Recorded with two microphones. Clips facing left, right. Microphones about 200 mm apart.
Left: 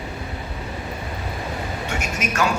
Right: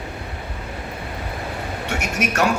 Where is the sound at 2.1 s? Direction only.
70° right (ahead or behind).